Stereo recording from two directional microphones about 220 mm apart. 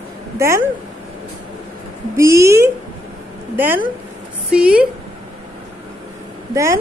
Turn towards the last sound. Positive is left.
turn(degrees=-15)  # may be behind; listen again after turning